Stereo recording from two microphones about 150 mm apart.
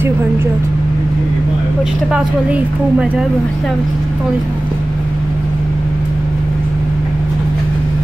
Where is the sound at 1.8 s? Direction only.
5° right (ahead or behind).